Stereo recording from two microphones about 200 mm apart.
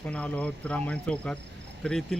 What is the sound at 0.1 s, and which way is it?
Speech, 5° left (ahead or behind).